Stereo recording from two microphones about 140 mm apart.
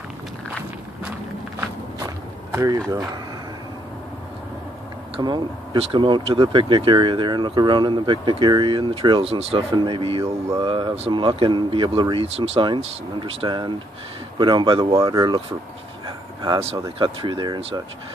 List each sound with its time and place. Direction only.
2.5 s speech: 25° right (ahead or behind)
5.1 s speech: 35° right (ahead or behind)
9.8 s speech: 35° right (ahead or behind)
17.0 s speech: 35° right (ahead or behind)